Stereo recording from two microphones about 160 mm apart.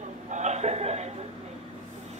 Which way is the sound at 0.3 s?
45° right (ahead or behind).